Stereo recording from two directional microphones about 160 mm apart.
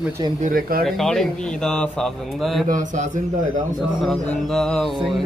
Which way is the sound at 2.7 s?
50° right (ahead or behind).